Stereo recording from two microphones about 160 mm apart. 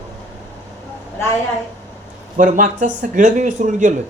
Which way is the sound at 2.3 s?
55° right (ahead or behind).